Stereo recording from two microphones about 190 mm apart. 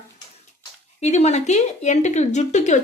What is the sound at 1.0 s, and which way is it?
Speech, 35° left (ahead or behind).